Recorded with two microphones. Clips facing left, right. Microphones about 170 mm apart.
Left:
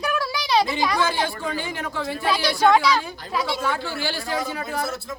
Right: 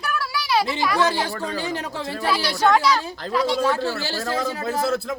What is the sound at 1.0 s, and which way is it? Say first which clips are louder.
Speech: right 2 dB; 40° right (ahead or behind).